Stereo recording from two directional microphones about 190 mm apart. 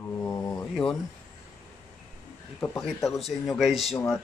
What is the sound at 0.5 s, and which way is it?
Speech, 5° left (ahead or behind).